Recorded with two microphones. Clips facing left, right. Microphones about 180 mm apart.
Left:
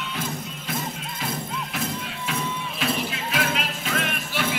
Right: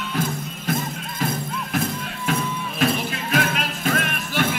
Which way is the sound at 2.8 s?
50° right (ahead or behind).